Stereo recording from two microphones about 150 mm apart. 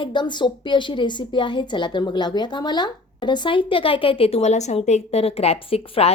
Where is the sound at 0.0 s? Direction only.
30° left (ahead or behind).